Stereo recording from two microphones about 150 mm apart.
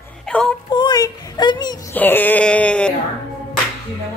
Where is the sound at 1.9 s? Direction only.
10° left (ahead or behind).